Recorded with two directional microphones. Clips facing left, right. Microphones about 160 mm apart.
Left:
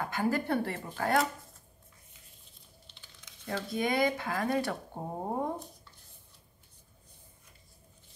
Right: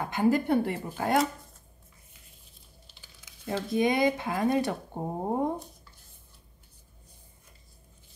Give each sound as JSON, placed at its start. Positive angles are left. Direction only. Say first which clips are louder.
{"t": 0.0, "sound": "speech", "louder": "right 5 dB", "side_deg": -20}
{"t": 2.9, "sound": "a sound", "louder": "right 1 dB", "side_deg": -5}
{"t": 3.4, "sound": "speech", "louder": "right 6 dB", "side_deg": -20}